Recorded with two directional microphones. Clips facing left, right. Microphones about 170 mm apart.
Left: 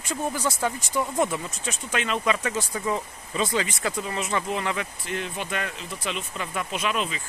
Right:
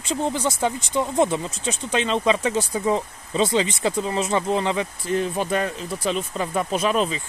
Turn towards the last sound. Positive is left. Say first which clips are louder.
# right 6 dB
turn(degrees=-40)  # may be behind; listen again after turning